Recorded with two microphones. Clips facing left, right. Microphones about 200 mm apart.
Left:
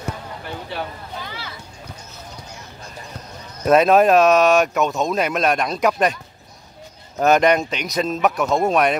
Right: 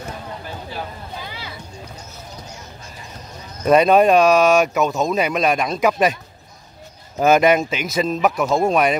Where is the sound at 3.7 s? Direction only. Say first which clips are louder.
Right 1 dB; centre (ahead or behind).